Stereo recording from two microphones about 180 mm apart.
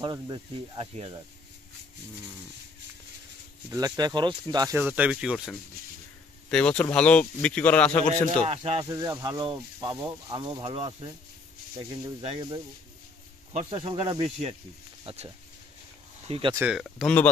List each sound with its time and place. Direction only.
0.0 s speech: 25° right (ahead or behind)
3.7 s speech: 20° right (ahead or behind)
4.7 s speech: 10° right (ahead or behind)
6.5 s speech: 5° left (ahead or behind)
8.5 s speech: 30° right (ahead or behind)
8.9 s speech: 20° right (ahead or behind)
13.5 s speech: 35° right (ahead or behind)
16.3 s speech: 30° right (ahead or behind)
16.5 s speech: 5° right (ahead or behind)